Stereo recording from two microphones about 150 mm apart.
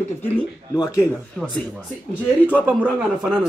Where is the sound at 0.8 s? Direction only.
20° left (ahead or behind).